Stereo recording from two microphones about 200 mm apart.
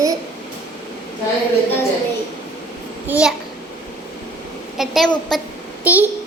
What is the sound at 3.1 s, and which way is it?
Speech, 5° right (ahead or behind).